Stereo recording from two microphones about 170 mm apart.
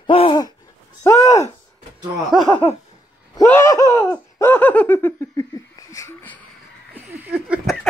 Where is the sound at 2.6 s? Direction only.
30° left (ahead or behind).